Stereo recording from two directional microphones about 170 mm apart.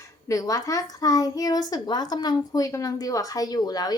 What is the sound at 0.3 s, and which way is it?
A woman's voice, 20° left (ahead or behind).